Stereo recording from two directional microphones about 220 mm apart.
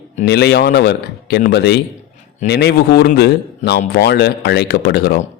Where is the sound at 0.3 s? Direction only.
50° left (ahead or behind).